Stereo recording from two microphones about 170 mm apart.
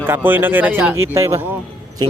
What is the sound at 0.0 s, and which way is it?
Speech, 10° right (ahead or behind).